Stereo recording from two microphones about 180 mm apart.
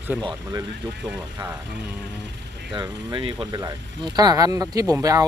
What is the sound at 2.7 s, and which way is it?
Speech, 25° right (ahead or behind).